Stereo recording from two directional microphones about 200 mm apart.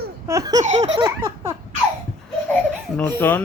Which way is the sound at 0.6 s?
35° right (ahead or behind).